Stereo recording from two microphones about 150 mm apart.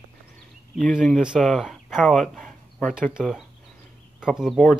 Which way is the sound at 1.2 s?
Centre (ahead or behind).